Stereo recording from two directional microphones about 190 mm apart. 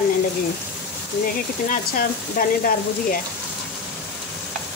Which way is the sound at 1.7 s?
45° left (ahead or behind).